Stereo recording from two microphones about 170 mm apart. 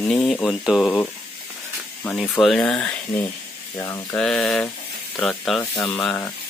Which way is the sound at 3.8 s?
20° left (ahead or behind).